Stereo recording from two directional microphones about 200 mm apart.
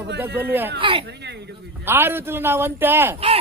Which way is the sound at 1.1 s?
55° right (ahead or behind).